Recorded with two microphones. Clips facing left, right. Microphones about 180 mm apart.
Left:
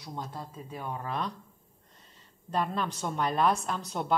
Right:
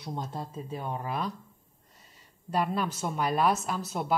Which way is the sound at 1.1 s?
5° right (ahead or behind).